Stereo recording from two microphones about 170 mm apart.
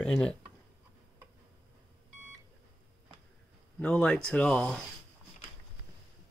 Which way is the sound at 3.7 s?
5° left (ahead or behind).